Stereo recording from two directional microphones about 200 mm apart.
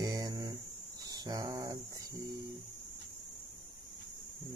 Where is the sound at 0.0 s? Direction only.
20° right (ahead or behind).